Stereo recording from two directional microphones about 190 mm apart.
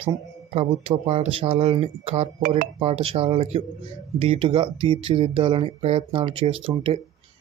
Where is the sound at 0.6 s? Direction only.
30° right (ahead or behind).